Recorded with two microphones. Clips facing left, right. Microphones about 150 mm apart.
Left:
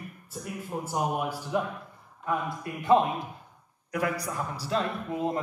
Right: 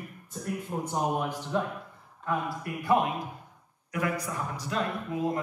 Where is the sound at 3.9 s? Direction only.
35° left (ahead or behind).